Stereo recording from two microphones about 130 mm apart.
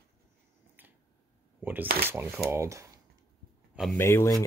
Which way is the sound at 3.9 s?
20° left (ahead or behind).